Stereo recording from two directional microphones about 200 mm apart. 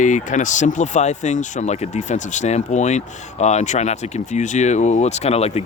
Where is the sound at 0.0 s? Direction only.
40° left (ahead or behind).